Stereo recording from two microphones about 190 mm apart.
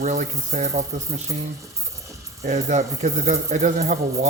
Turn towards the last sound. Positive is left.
turn(degrees=-35)  # may be behind; listen again after turning